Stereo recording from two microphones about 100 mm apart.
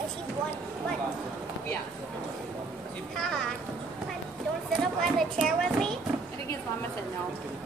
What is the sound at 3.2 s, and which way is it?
Speech, 5° left (ahead or behind).